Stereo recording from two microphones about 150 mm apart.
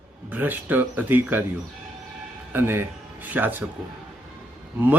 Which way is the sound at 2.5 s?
15° right (ahead or behind).